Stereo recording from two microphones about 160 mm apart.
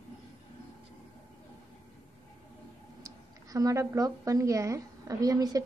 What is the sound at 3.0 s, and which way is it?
A woman's voice, 20° right (ahead or behind).